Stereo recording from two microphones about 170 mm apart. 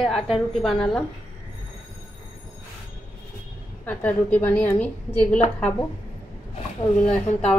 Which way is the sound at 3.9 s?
10° left (ahead or behind).